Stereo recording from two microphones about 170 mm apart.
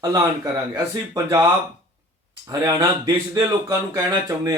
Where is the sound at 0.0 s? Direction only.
20° right (ahead or behind).